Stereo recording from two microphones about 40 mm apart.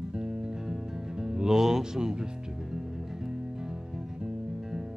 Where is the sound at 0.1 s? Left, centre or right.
Centre.